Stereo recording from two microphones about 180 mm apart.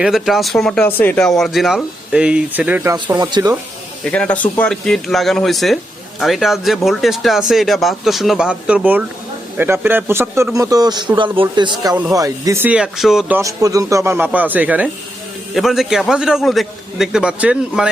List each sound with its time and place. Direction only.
0.0 s speech: centre (ahead or behind)
2.9 s a man's voice: 20° right (ahead or behind)
4.0 s a man's voice: 5° left (ahead or behind)